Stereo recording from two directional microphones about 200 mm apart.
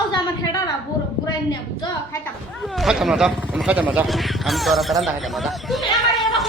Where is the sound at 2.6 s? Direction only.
Centre (ahead or behind).